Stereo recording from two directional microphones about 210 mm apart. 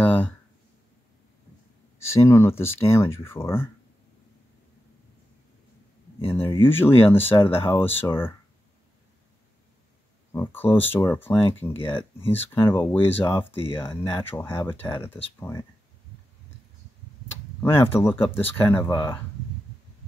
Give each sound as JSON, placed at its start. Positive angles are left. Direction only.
{"t": 0.0, "sound": "a sound", "side_deg": 10}
{"t": 2.0, "sound": "speech", "side_deg": 15}
{"t": 6.2, "sound": "speech", "side_deg": 10}
{"t": 10.3, "sound": "speech", "side_deg": 10}
{"t": 13.6, "sound": "speech", "side_deg": 25}
{"t": 14.1, "sound": "speech", "side_deg": 10}
{"t": 17.6, "sound": "speech", "side_deg": 10}